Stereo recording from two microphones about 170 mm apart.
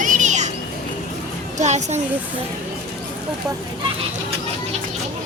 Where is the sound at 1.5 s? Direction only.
40° right (ahead or behind).